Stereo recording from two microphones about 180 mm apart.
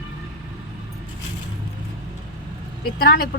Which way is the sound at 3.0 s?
55° left (ahead or behind).